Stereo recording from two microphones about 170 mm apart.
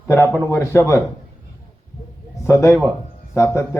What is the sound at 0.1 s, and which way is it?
Speech, 15° left (ahead or behind).